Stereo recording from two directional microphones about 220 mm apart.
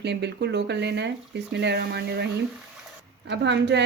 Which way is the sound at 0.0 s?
50° right (ahead or behind).